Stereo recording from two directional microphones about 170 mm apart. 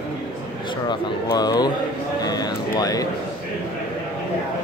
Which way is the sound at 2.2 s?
25° left (ahead or behind).